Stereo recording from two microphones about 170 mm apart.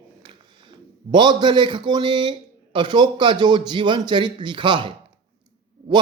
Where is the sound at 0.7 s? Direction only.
25° right (ahead or behind).